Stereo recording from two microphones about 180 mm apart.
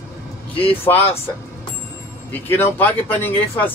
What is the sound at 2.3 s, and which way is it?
Speech, 10° left (ahead or behind).